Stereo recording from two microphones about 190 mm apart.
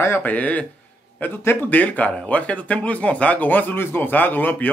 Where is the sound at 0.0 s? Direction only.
10° left (ahead or behind).